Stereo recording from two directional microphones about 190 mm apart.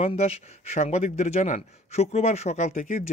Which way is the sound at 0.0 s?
35° left (ahead or behind).